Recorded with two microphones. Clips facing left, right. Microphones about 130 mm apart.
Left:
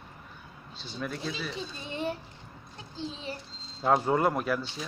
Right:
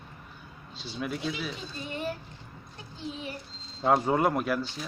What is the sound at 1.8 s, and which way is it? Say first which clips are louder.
Speech: even; 20° left (ahead or behind).